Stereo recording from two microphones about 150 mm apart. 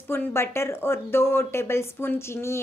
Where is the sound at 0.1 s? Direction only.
15° left (ahead or behind).